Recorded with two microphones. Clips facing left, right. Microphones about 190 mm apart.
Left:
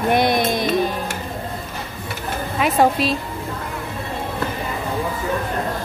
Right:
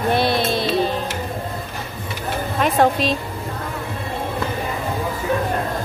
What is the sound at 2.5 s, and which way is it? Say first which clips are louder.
Speech: even; 5° left (ahead or behind).